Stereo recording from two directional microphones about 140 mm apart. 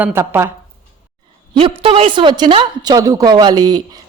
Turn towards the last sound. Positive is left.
turn(degrees=-30)  # may be behind; listen again after turning